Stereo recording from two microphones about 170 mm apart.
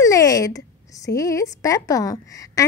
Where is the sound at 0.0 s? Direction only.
20° left (ahead or behind).